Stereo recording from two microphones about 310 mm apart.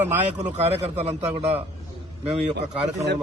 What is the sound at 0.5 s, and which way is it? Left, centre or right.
Speech, centre.